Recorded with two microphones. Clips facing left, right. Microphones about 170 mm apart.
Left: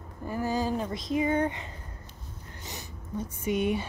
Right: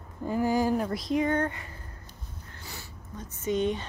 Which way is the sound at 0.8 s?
Centre (ahead or behind).